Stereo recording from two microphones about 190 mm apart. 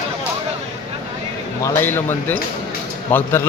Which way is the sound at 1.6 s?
10° left (ahead or behind).